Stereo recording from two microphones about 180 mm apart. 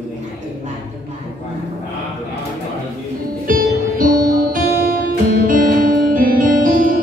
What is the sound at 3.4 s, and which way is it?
Music, 50° right (ahead or behind).